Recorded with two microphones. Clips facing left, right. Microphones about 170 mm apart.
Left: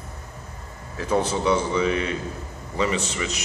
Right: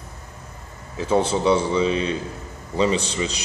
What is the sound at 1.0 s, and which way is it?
A man's voice, 25° right (ahead or behind).